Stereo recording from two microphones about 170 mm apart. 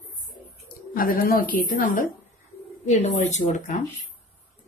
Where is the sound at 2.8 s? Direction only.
40° left (ahead or behind).